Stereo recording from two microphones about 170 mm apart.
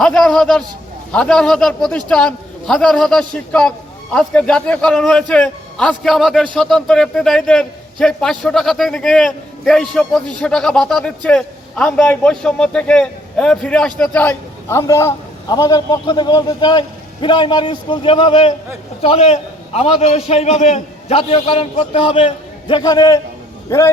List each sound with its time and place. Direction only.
0.0 s a man's voice: 5° left (ahead or behind)